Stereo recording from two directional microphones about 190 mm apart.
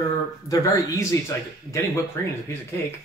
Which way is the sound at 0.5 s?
15° left (ahead or behind).